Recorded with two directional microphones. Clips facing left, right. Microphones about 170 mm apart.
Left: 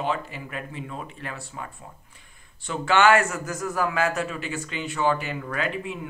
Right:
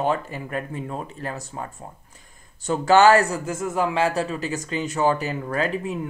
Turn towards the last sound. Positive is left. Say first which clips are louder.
# right 4 dB
turn(degrees=-40)  # may be behind; listen again after turning